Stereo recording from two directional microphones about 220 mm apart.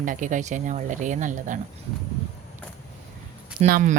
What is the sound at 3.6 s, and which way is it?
Speech, 40° right (ahead or behind).